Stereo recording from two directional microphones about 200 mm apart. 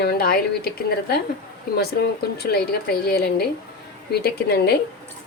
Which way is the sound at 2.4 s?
50° left (ahead or behind).